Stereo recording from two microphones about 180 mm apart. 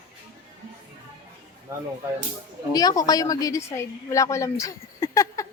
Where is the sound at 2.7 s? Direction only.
20° left (ahead or behind).